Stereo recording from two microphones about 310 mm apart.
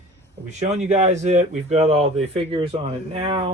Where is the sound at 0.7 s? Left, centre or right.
Right.